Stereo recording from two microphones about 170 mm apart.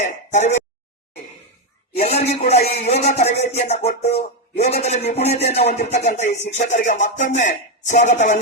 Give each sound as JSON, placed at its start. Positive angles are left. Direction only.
{"t": 0.0, "sound": "music", "side_deg": 45}
{"t": 2.0, "sound": "a man's voice", "side_deg": 35}
{"t": 6.1, "sound": "music", "side_deg": 45}